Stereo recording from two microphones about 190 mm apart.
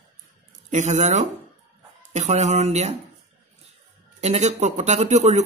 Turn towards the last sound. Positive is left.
turn(degrees=-35)  # may be behind; listen again after turning